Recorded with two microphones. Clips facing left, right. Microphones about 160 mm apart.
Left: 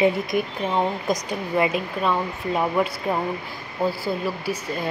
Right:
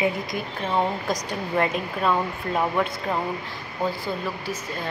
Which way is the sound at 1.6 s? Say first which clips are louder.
Left 1 dB; centre (ahead or behind).